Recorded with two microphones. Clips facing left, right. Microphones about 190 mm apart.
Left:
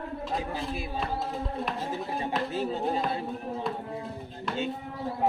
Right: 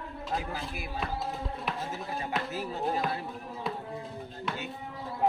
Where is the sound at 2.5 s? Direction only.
25° left (ahead or behind).